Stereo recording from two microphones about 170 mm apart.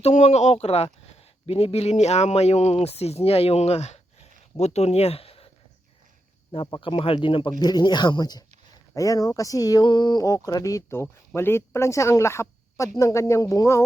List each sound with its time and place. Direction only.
0.0 s speech: 40° left (ahead or behind)
6.5 s speech: 30° left (ahead or behind)